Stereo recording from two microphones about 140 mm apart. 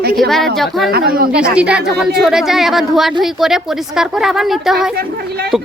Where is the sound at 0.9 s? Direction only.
90° right.